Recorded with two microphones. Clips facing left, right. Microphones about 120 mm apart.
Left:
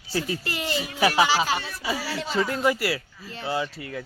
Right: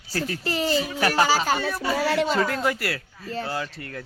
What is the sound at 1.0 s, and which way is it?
Speech, 5° left (ahead or behind).